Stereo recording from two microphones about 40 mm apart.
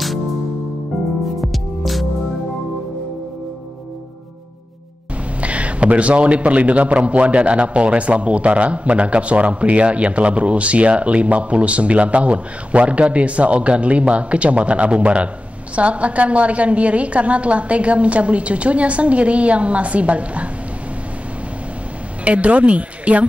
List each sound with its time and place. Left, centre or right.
1.4 s music: centre
5.4 s a man's voice: right
22.2 s a man's voice: right